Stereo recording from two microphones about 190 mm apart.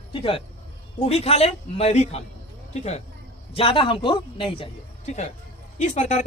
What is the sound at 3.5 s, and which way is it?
A man's voice, 25° left (ahead or behind).